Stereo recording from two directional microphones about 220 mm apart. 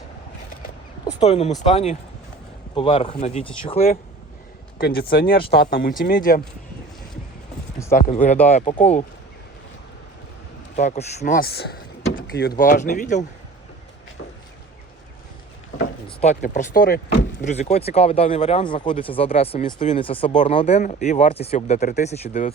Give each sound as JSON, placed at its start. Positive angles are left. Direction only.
{"t": 1.2, "sound": "speech", "side_deg": 30}
{"t": 4.8, "sound": "speech", "side_deg": 45}
{"t": 7.9, "sound": "speech", "side_deg": 35}
{"t": 10.8, "sound": "speech", "side_deg": 30}
{"t": 11.3, "sound": "speech", "side_deg": 45}
{"t": 16.0, "sound": "speech", "side_deg": 30}
{"t": 17.4, "sound": "speech", "side_deg": 30}